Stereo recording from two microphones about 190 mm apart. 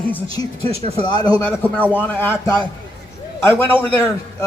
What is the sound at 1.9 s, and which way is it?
A man's voice, 10° left (ahead or behind).